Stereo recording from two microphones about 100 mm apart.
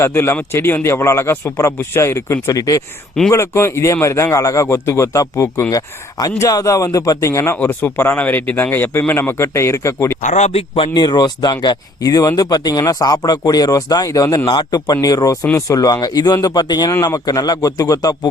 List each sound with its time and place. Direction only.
0.0 s speech: 25° left (ahead or behind)
7.5 s speech: 20° left (ahead or behind)
10.9 s speech: 45° left (ahead or behind)
14.4 s speech: 50° left (ahead or behind)